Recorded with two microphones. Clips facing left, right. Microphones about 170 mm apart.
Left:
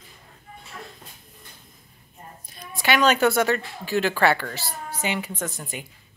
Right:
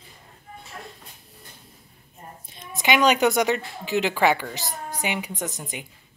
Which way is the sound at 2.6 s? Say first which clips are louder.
Even; 20° right (ahead or behind).